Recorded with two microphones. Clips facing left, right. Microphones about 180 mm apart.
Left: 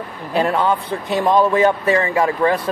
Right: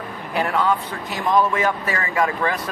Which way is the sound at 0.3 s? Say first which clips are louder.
Left 3 dB; 30° left (ahead or behind).